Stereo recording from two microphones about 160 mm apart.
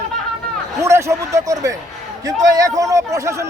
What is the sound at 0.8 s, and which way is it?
A man's voice, 20° right (ahead or behind).